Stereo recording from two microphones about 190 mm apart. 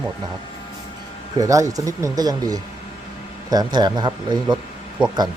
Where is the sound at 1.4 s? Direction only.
20° right (ahead or behind).